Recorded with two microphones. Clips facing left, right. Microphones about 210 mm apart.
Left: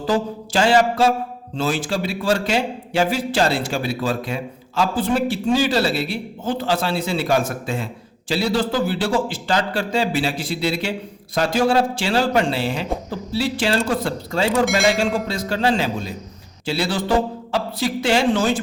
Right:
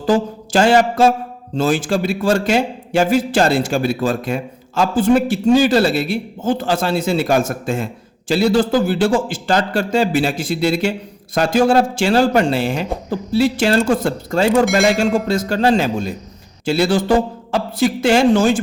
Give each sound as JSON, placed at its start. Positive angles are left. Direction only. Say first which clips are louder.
{"t": 0.1, "sound": "a man's voice", "louder": "right 5 dB", "side_deg": -45}
{"t": 14.6, "sound": "speech", "louder": "right 4 dB", "side_deg": 0}
{"t": 14.9, "sound": "a man's voice", "louder": "right 5 dB", "side_deg": -45}